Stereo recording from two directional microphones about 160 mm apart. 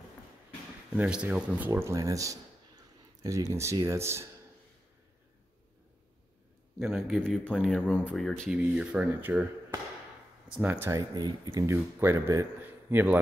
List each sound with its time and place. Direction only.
0.9 s speech: 5° right (ahead or behind)
1.7 s speech: 20° right (ahead or behind)
6.8 s speech: 5° right (ahead or behind)